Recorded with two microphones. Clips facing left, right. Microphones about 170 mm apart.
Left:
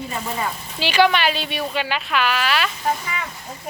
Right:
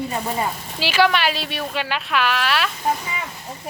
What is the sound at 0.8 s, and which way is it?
Speech, 5° right (ahead or behind).